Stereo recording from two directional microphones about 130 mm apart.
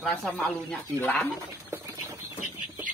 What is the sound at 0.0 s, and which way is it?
Speech, 5° left (ahead or behind).